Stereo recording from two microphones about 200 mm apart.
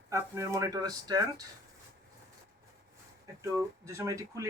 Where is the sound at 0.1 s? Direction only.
15° right (ahead or behind).